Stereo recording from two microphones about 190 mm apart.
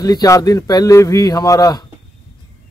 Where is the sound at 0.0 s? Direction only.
20° left (ahead or behind).